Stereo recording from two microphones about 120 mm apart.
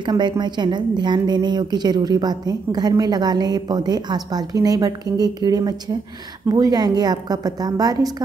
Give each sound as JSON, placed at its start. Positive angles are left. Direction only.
{"t": 0.0, "sound": "a woman's voice", "side_deg": -40}